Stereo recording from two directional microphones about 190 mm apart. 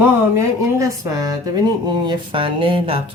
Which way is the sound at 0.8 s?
15° right (ahead or behind).